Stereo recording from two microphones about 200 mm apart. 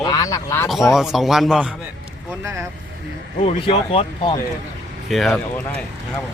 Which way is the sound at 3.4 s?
30° left (ahead or behind).